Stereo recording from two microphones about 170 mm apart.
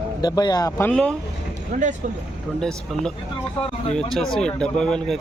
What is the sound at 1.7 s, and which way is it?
Speech, 45° right (ahead or behind).